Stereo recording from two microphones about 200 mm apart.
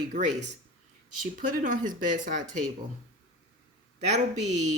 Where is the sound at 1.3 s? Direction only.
40° right (ahead or behind).